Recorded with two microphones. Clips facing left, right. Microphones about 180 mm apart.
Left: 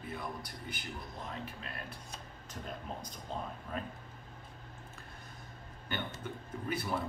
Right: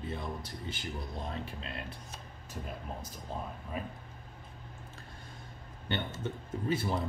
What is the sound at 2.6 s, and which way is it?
Speech, 5° right (ahead or behind).